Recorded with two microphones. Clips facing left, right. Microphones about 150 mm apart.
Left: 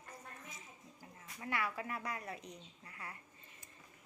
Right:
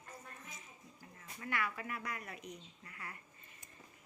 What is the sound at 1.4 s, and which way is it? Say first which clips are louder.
A woman's voice: left 1 dB; 30° left (ahead or behind).